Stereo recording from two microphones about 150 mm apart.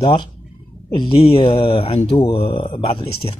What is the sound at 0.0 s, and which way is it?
Speech, 30° left (ahead or behind).